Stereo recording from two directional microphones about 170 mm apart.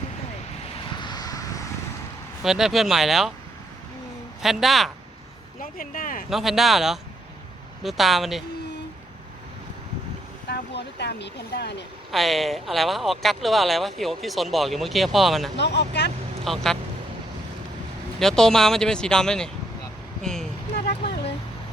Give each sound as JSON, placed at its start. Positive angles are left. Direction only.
{"t": 0.9, "sound": "vehicle", "side_deg": 25}
{"t": 2.4, "sound": "speech", "side_deg": 0}
{"t": 4.4, "sound": "speech", "side_deg": 0}
{"t": 5.7, "sound": "speech", "side_deg": 55}
{"t": 6.3, "sound": "speech", "side_deg": 0}
{"t": 10.5, "sound": "speech", "side_deg": 80}
{"t": 12.1, "sound": "speech", "side_deg": 0}
{"t": 15.5, "sound": "speech", "side_deg": 85}
{"t": 16.4, "sound": "speech", "side_deg": 0}
{"t": 18.2, "sound": "speech", "side_deg": 5}
{"t": 20.2, "sound": "vehicle", "side_deg": 5}